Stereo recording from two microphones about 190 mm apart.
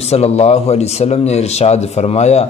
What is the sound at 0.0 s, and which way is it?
Speech, 35° left (ahead or behind).